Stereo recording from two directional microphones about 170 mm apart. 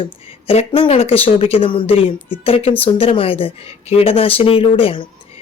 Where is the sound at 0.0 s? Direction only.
35° left (ahead or behind).